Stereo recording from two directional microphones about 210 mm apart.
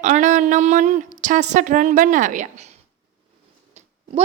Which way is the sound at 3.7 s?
35° right (ahead or behind).